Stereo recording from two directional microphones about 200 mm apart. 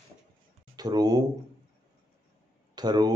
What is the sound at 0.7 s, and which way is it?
Speech, 20° right (ahead or behind).